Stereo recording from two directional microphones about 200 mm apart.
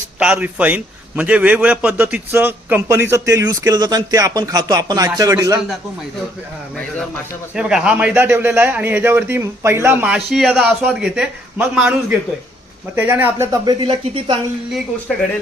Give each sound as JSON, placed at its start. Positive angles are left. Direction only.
{"t": 0.2, "sound": "a man's voice", "side_deg": -5}
{"t": 7.5, "sound": "a man's voice", "side_deg": -5}
{"t": 13.0, "sound": "speech", "side_deg": -10}